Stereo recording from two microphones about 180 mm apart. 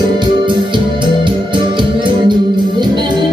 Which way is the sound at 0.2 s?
25° right (ahead or behind).